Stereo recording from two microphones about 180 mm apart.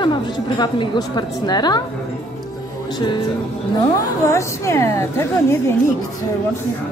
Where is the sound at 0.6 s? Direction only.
25° left (ahead or behind).